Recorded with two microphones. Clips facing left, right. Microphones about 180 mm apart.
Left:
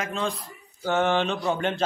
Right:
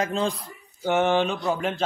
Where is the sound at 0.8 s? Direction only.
15° right (ahead or behind).